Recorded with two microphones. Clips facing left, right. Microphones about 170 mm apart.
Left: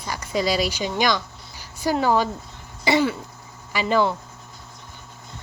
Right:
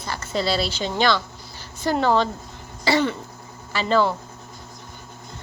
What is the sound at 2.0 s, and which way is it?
Speech, 10° left (ahead or behind).